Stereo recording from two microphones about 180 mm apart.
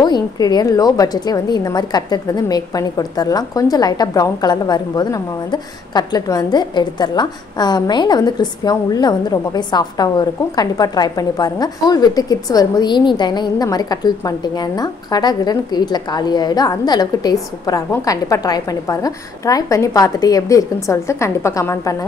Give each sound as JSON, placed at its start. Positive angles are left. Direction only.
{"t": 0.0, "sound": "a woman's voice", "side_deg": 25}